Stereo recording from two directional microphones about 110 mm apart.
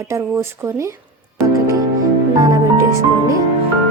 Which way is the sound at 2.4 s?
30° right (ahead or behind).